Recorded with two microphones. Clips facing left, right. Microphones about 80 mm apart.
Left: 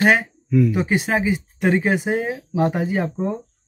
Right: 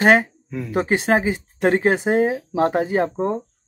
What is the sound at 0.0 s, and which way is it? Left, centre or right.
Speech, right.